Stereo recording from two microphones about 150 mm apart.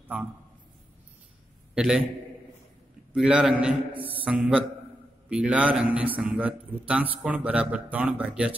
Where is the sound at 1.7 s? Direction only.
5° right (ahead or behind).